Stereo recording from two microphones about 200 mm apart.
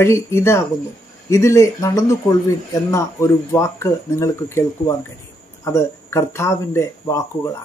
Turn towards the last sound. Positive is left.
turn(degrees=15)  # may be behind; listen again after turning